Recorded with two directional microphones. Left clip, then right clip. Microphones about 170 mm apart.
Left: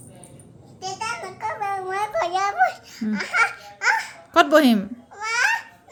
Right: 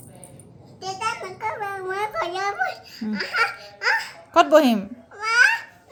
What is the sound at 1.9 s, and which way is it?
Babbling, 30° left (ahead or behind).